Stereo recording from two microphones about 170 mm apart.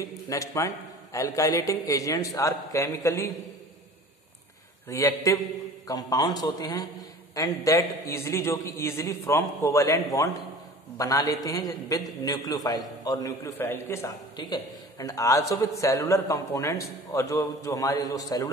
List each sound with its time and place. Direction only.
0.3 s a man's voice: 20° left (ahead or behind)
4.8 s a man's voice: 15° left (ahead or behind)